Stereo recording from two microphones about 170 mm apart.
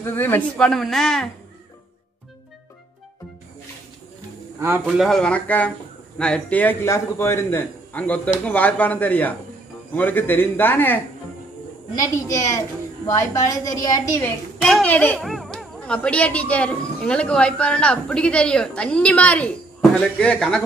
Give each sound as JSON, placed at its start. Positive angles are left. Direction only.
{"t": 0.0, "sound": "speech", "side_deg": 10}
{"t": 4.6, "sound": "a man's voice", "side_deg": -15}
{"t": 4.8, "sound": "a man's voice", "side_deg": 0}
{"t": 12.0, "sound": "a woman's voice", "side_deg": 20}
{"t": 14.6, "sound": "a man's voice", "side_deg": 5}